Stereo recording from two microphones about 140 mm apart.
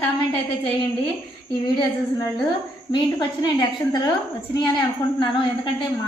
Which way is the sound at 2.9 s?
30° left (ahead or behind).